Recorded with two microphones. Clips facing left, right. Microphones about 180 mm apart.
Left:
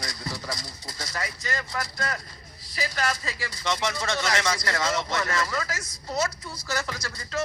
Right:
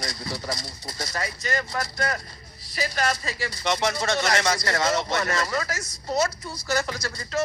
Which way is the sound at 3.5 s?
65° right (ahead or behind).